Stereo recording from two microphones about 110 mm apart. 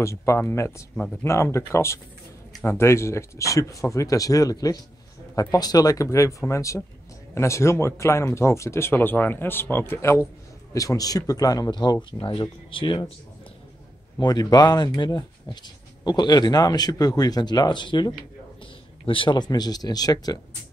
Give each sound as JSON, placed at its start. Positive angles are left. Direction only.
{"t": 0.0, "sound": "speech", "side_deg": 25}
{"t": 0.9, "sound": "speech", "side_deg": 10}
{"t": 1.2, "sound": "speech", "side_deg": 25}
{"t": 14.2, "sound": "speech", "side_deg": 35}